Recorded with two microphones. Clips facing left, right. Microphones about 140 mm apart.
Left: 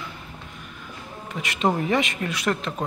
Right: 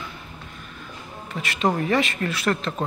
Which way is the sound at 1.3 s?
20° left (ahead or behind).